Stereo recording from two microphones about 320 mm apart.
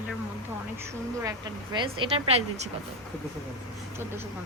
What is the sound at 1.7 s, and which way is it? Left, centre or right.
Speech, centre.